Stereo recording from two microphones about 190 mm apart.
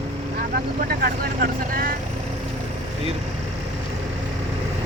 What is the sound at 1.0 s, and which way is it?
Speech, 50° right (ahead or behind).